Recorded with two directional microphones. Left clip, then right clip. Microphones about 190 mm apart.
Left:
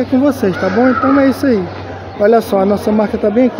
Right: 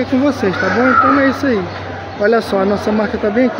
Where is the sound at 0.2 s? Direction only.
20° left (ahead or behind).